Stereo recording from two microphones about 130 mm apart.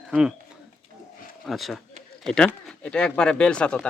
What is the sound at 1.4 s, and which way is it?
Speech, centre (ahead or behind).